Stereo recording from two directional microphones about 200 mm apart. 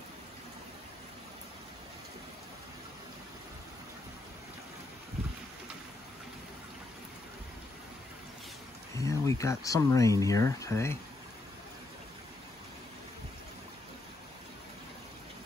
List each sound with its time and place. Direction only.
9.0 s speech: 15° left (ahead or behind)